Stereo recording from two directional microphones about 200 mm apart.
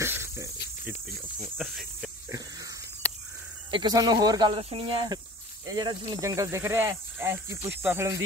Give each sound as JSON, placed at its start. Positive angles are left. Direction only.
{"t": 0.0, "sound": "snake", "side_deg": -10}
{"t": 1.6, "sound": "speech", "side_deg": 0}
{"t": 3.7, "sound": "speech", "side_deg": -20}